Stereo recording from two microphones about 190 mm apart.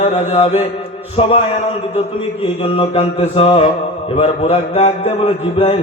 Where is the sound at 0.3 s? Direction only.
35° left (ahead or behind).